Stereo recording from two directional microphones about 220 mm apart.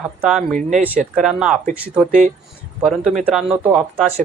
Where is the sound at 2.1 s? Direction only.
35° right (ahead or behind).